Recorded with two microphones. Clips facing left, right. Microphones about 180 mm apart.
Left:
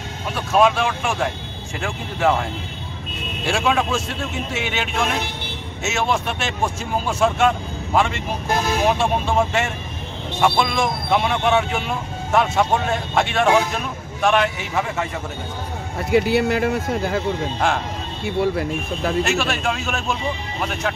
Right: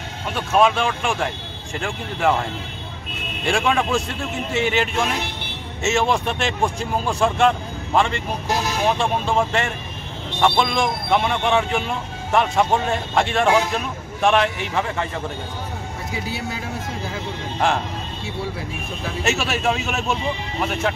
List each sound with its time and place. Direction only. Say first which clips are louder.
0.3 s speech: left 1 dB; centre (ahead or behind)
3.4 s speech: even; 5° left (ahead or behind)
16.1 s speech: left 13 dB; 70° left (ahead or behind)
19.2 s speech: even; centre (ahead or behind)